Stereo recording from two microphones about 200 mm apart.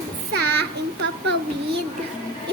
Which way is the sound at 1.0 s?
60° right (ahead or behind).